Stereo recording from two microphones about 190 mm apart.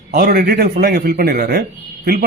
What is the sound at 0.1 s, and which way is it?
Speech, 50° right (ahead or behind).